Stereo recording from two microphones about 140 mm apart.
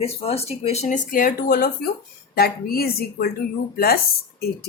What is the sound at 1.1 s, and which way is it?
A woman's voice, 90° left.